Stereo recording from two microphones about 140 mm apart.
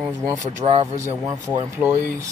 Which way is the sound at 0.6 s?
40° right (ahead or behind).